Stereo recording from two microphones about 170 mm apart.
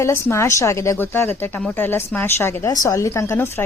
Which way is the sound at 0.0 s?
15° left (ahead or behind).